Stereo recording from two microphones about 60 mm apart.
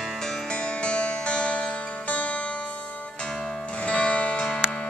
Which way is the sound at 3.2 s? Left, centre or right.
Centre.